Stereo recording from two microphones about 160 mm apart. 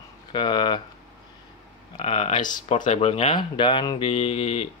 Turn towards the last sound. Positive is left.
turn(degrees=40)  # may be behind; listen again after turning